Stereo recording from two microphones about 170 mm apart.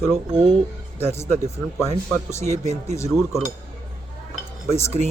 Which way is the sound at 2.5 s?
40° right (ahead or behind).